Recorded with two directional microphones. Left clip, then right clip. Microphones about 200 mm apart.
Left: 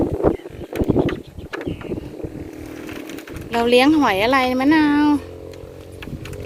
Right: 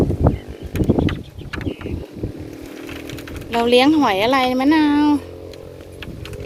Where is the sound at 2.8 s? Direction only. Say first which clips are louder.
Right 1 dB; 5° left (ahead or behind).